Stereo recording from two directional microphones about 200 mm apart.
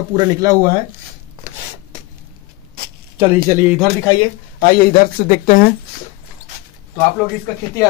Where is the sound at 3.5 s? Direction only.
10° right (ahead or behind).